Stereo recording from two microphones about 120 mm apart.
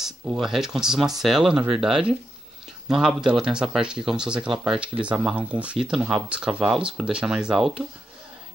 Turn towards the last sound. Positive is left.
turn(degrees=-5)  # may be behind; listen again after turning